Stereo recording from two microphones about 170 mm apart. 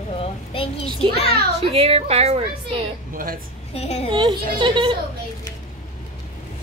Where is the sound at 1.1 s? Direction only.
35° left (ahead or behind).